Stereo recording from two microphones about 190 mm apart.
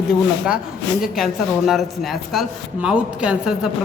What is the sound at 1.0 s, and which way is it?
A man's voice, centre (ahead or behind).